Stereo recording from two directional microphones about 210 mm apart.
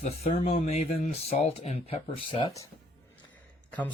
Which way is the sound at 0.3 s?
30° left (ahead or behind).